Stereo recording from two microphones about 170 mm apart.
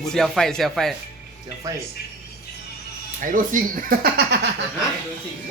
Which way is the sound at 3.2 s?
50° right (ahead or behind).